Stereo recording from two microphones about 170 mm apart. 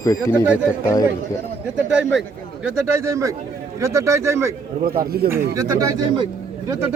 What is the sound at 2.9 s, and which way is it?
Speech, 15° right (ahead or behind).